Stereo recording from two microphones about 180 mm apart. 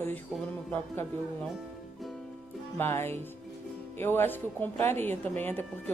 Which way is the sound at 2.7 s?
10° left (ahead or behind).